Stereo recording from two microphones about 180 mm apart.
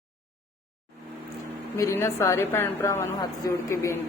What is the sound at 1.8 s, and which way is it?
A woman's voice, 15° left (ahead or behind).